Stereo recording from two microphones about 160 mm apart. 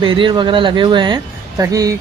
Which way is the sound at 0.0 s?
30° right (ahead or behind).